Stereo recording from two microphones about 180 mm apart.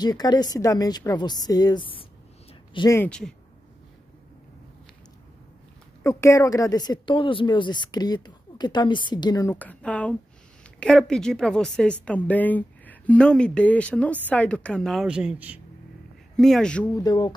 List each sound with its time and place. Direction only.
0.0 s speech: 20° left (ahead or behind)
3.0 s a woman's voice: 5° left (ahead or behind)
6.0 s speech: 15° left (ahead or behind)
9.5 s a woman's voice: 10° left (ahead or behind)
16.9 s speech: 20° left (ahead or behind)